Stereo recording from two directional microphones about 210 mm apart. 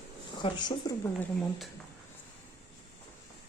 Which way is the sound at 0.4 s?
25° left (ahead or behind).